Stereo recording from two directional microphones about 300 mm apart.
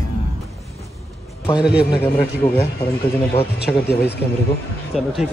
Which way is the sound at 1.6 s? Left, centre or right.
Centre.